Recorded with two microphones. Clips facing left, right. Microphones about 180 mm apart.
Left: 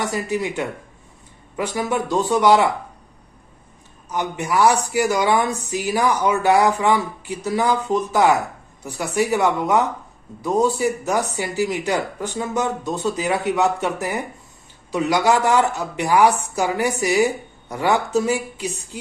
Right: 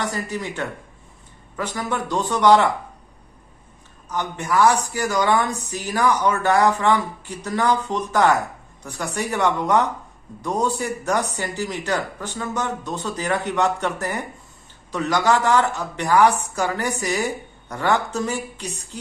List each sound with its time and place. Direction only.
0.0 s speech: 10° left (ahead or behind)
4.2 s a woman's voice: 20° left (ahead or behind)